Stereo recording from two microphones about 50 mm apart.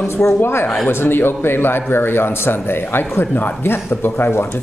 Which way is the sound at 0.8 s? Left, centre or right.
Left.